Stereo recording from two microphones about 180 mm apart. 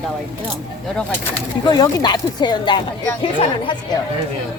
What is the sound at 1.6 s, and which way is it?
Speech, 20° left (ahead or behind).